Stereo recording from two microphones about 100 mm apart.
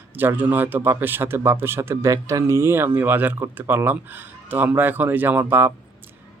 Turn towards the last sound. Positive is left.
turn(degrees=-20)  # may be behind; listen again after turning